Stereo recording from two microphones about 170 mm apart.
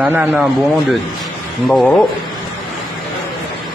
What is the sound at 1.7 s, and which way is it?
Speech, 5° left (ahead or behind).